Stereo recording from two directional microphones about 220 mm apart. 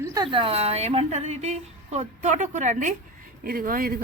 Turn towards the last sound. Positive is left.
turn(degrees=-40)  # may be behind; listen again after turning